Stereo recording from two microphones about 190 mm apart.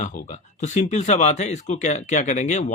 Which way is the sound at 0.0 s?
40° left (ahead or behind).